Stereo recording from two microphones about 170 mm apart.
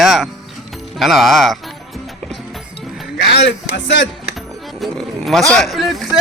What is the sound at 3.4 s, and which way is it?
Speech, 90° left.